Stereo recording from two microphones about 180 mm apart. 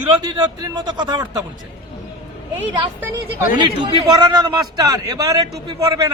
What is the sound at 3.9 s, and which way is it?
A man's voice, 25° right (ahead or behind).